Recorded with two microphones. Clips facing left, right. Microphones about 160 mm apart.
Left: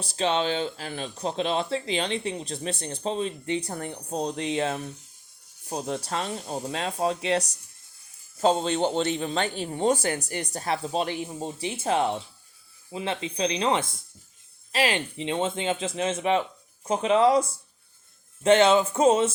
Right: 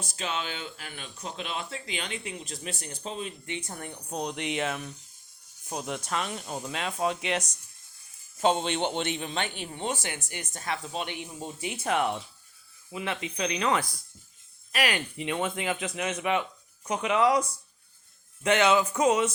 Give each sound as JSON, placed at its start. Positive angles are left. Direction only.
{"t": 0.0, "sound": "speech", "side_deg": 35}